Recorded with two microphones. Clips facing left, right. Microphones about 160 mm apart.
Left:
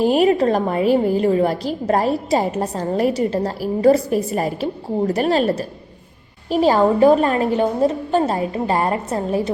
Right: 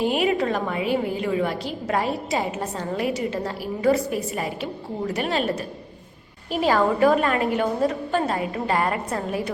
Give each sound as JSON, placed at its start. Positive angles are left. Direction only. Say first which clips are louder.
{"t": 0.0, "sound": "a woman's voice", "louder": "left 7 dB", "side_deg": 40}